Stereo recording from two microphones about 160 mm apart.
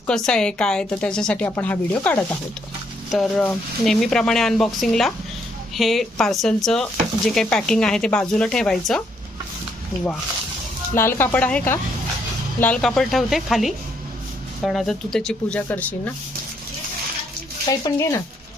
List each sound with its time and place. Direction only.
0.3 s a woman's voice: 5° left (ahead or behind)
10.9 s a woman's voice: 15° left (ahead or behind)
17.7 s speech: 20° left (ahead or behind)